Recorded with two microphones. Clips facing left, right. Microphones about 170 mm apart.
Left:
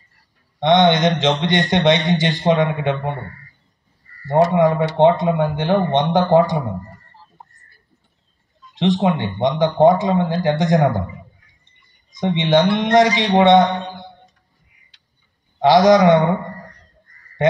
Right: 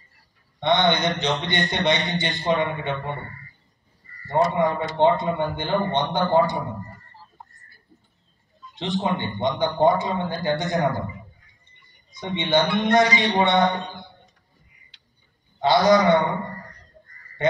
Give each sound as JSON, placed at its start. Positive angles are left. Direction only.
{"t": 0.6, "sound": "speech", "side_deg": 90}
{"t": 4.3, "sound": "speech", "side_deg": 90}
{"t": 8.7, "sound": "speech", "side_deg": 85}
{"t": 12.2, "sound": "speech", "side_deg": 90}
{"t": 15.6, "sound": "speech", "side_deg": 90}